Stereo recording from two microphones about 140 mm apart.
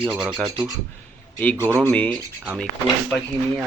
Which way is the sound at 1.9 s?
10° left (ahead or behind).